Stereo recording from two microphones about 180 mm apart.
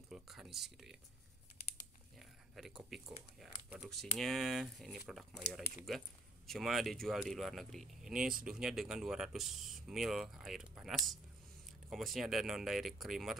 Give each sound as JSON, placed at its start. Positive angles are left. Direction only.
{"t": 0.1, "sound": "speech", "side_deg": 0}
{"t": 2.1, "sound": "a sound", "side_deg": 0}
{"t": 2.9, "sound": "speech", "side_deg": 0}
{"t": 8.2, "sound": "speech", "side_deg": -50}
{"t": 8.5, "sound": "speech", "side_deg": -5}